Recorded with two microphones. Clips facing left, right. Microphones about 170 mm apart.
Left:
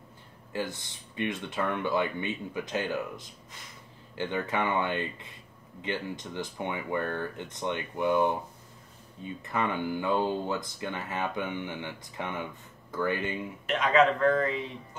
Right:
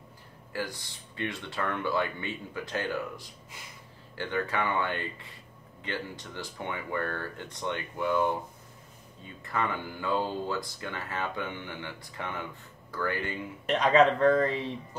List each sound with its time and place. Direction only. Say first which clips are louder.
0.5 s speech: left 2 dB; 20° left (ahead or behind)
9.4 s speech: left 2 dB; 20° left (ahead or behind)
13.7 s speech: right 2 dB; 35° right (ahead or behind)